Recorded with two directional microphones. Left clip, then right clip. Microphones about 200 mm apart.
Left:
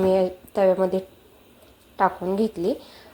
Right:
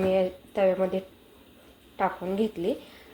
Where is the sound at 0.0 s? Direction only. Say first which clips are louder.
Left 4 dB; 20° left (ahead or behind).